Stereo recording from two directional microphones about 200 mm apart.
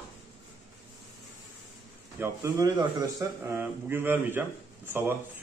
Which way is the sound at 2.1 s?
15° right (ahead or behind).